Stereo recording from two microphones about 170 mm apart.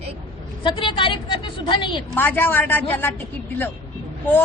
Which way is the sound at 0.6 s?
30° left (ahead or behind).